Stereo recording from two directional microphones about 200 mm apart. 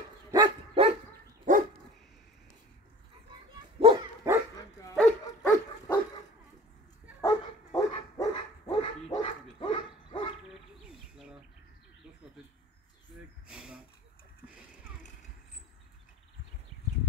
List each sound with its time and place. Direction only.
0.3 s dog: 25° right (ahead or behind)
1.5 s dog: 40° right (ahead or behind)
3.8 s dog: 20° right (ahead or behind)
4.9 s dog: 10° left (ahead or behind)
7.2 s dog: 15° left (ahead or behind)
9.1 s dog: 30° left (ahead or behind)
13.5 s a sound: 5° right (ahead or behind)